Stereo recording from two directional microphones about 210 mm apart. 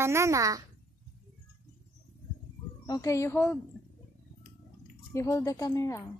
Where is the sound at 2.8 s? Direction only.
15° left (ahead or behind).